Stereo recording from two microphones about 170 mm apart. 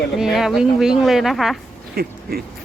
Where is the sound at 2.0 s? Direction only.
65° right (ahead or behind).